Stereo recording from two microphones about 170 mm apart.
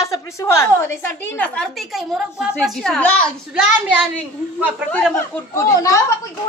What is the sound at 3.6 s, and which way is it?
Speech, 5° right (ahead or behind).